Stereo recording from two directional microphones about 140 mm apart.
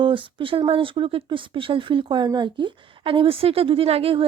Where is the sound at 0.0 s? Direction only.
35° right (ahead or behind).